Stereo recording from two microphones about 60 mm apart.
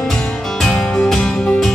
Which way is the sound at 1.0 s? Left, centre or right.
Centre.